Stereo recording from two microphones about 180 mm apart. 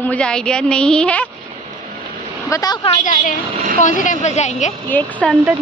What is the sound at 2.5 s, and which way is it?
Speech, 20° left (ahead or behind).